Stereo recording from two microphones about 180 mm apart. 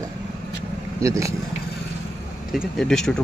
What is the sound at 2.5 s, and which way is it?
Speech, centre (ahead or behind).